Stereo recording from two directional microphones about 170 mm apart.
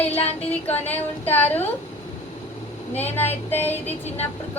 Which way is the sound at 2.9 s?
10° left (ahead or behind).